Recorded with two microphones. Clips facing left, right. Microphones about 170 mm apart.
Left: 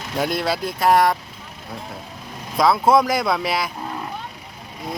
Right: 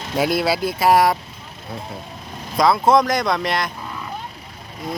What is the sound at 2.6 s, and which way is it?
Speech, centre (ahead or behind).